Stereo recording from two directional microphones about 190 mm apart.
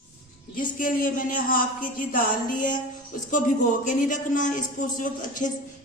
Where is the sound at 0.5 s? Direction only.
45° left (ahead or behind).